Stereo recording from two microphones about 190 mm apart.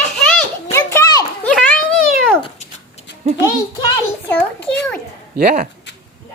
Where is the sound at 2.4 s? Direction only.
35° left (ahead or behind).